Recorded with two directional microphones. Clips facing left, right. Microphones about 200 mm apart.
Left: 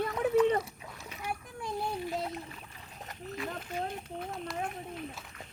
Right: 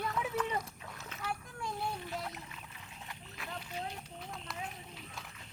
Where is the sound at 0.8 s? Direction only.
15° left (ahead or behind).